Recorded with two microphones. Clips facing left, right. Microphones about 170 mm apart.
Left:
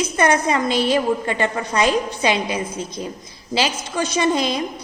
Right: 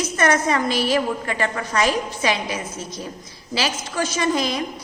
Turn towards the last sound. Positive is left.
turn(degrees=25)  # may be behind; listen again after turning